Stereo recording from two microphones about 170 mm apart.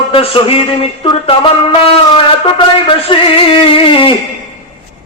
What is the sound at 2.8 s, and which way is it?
Speech, 30° left (ahead or behind).